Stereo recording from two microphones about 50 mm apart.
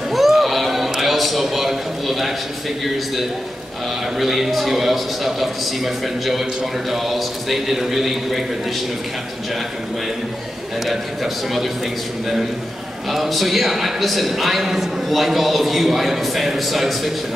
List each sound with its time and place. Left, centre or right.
0.1 s a sound: centre
4.2 s a man's voice: centre
6.9 s a man's voice: centre
13.1 s a man's voice: centre